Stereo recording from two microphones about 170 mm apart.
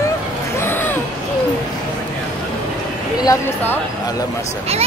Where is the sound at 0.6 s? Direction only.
10° left (ahead or behind).